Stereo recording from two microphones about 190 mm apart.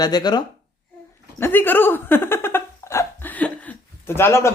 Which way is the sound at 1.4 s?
10° left (ahead or behind).